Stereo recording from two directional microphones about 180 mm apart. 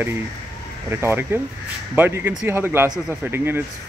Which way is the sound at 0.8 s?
15° right (ahead or behind).